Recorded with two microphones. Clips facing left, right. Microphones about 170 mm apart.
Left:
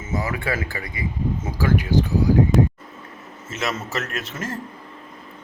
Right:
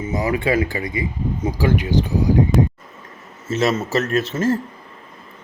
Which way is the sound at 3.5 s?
30° right (ahead or behind).